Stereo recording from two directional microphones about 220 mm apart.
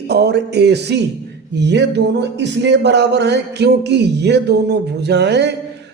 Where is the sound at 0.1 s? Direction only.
50° right (ahead or behind).